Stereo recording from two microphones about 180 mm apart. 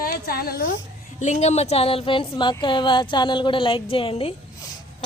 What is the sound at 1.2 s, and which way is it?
A woman's voice, 40° left (ahead or behind).